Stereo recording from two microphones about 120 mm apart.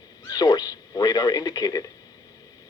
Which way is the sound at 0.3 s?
30° left (ahead or behind).